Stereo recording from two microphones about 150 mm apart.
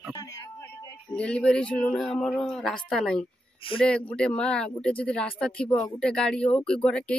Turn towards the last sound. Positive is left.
turn(degrees=5)  # may be behind; listen again after turning